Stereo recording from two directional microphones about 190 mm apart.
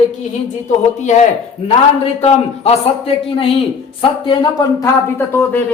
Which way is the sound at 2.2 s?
30° left (ahead or behind).